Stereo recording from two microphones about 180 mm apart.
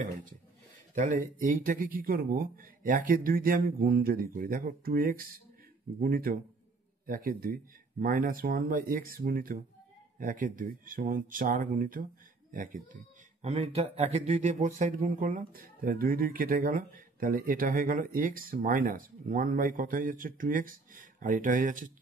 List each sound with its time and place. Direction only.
0.9 s speech: 45° right (ahead or behind)